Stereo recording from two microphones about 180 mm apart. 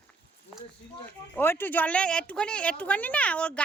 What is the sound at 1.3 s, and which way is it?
Speech, 10° left (ahead or behind).